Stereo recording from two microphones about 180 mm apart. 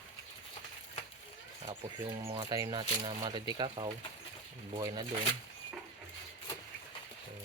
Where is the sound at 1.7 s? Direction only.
20° right (ahead or behind).